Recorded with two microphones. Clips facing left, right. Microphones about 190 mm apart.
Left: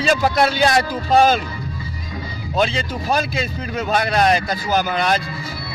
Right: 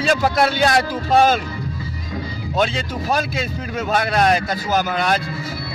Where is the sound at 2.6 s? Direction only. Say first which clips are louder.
Left 1 dB; centre (ahead or behind).